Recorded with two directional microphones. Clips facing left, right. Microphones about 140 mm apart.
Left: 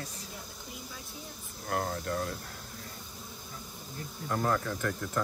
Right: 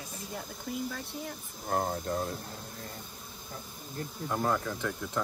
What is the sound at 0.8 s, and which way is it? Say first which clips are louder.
Speech: right 7 dB; 60° right (ahead or behind).